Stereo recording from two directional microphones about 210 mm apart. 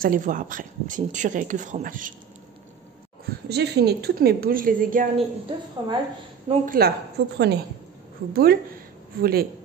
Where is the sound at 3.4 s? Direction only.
50° right (ahead or behind).